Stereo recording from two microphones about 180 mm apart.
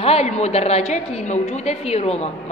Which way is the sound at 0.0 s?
35° left (ahead or behind).